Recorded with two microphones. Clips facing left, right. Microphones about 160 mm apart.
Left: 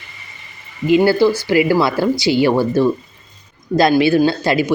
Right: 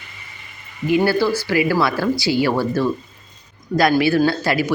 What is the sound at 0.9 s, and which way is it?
Speech, 20° left (ahead or behind).